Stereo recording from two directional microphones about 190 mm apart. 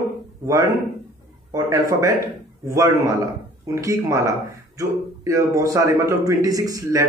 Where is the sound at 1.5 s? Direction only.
15° right (ahead or behind).